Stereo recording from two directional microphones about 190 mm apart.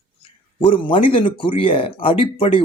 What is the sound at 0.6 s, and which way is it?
Speech, 25° left (ahead or behind).